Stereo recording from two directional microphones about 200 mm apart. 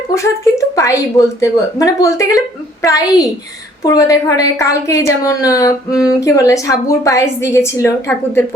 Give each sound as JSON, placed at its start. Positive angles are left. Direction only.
{"t": 0.1, "sound": "a woman's voice", "side_deg": 15}